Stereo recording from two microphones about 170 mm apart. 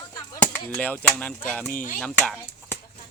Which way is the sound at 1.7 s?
55° left (ahead or behind).